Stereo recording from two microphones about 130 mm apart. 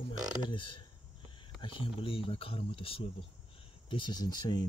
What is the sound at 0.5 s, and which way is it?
Speech, 40° left (ahead or behind).